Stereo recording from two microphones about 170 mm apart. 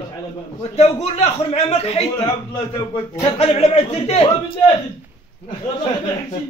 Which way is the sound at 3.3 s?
35° left (ahead or behind).